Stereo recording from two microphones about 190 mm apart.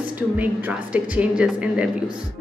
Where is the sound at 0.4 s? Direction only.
10° right (ahead or behind).